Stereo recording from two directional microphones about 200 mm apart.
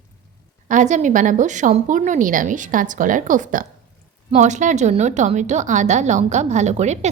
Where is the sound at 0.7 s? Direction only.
40° right (ahead or behind).